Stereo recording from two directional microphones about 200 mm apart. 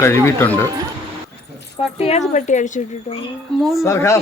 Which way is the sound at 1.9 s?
30° left (ahead or behind).